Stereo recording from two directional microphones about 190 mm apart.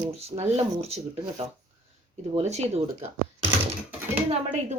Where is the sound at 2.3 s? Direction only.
35° right (ahead or behind).